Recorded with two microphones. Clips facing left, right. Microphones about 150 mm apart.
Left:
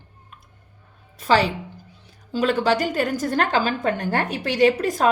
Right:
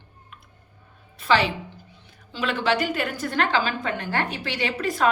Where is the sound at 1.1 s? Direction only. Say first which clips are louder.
Left 2 dB; 40° left (ahead or behind).